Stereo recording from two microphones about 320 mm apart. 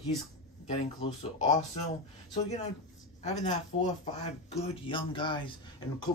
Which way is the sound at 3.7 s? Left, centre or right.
Left.